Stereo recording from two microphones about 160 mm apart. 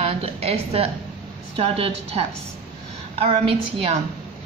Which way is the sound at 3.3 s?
35° right (ahead or behind).